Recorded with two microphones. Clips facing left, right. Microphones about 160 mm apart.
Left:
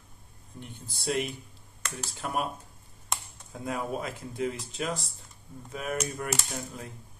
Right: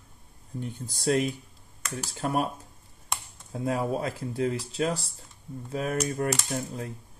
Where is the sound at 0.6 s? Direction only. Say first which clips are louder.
Right 8 dB; 40° right (ahead or behind).